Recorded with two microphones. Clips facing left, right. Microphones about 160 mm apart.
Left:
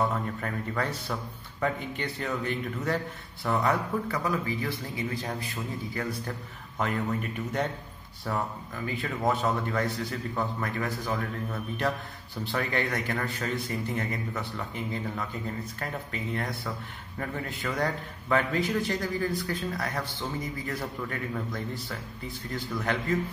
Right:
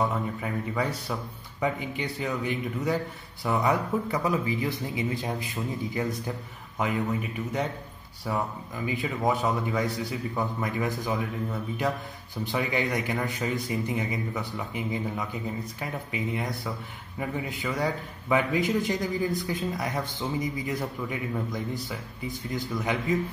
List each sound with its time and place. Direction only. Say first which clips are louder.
0.0 s a man's voice: right 1 dB; 5° right (ahead or behind)
6.8 s a man's voice: right 2 dB; 5° right (ahead or behind)
12.5 s a man's voice: right 2 dB; 15° right (ahead or behind)